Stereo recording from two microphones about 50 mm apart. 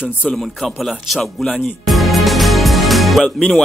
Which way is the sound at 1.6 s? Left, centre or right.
Centre.